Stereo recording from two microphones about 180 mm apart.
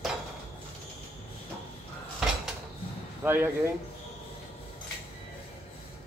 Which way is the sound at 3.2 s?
10° right (ahead or behind).